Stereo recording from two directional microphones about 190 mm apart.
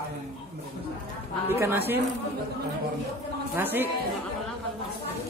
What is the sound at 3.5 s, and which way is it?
Speech, 10° right (ahead or behind).